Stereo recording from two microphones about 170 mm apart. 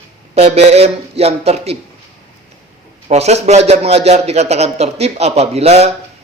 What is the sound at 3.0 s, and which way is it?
A man's voice, 40° right (ahead or behind).